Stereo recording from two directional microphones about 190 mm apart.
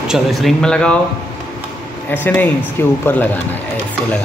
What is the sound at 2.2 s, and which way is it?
Speech, 10° left (ahead or behind).